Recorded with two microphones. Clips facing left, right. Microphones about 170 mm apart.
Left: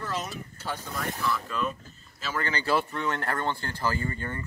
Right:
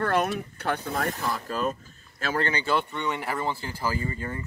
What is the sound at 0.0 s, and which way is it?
Speech, 60° right (ahead or behind).